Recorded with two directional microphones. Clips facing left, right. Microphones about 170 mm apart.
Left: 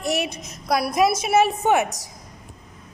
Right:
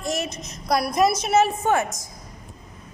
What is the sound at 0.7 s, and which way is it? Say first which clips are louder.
Speech: even; 5° left (ahead or behind).